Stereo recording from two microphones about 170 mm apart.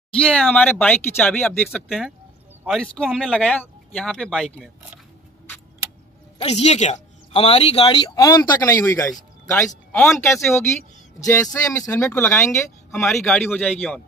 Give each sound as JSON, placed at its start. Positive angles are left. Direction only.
{"t": 0.1, "sound": "speech", "side_deg": 5}
{"t": 6.4, "sound": "speech", "side_deg": 40}
{"t": 7.8, "sound": "speech", "side_deg": 25}
{"t": 12.5, "sound": "speech", "side_deg": 0}